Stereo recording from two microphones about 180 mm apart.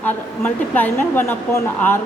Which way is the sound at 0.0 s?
10° left (ahead or behind).